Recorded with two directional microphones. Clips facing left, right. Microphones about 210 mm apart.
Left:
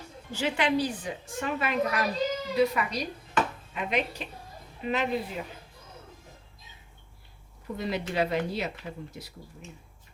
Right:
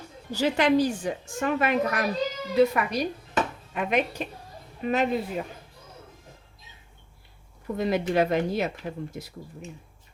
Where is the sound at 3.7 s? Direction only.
50° right (ahead or behind).